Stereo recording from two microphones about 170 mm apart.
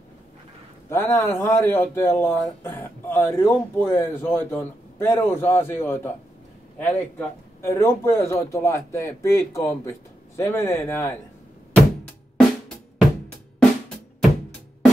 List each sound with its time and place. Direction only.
0.8 s a man's voice: 15° left (ahead or behind)
11.7 s music: centre (ahead or behind)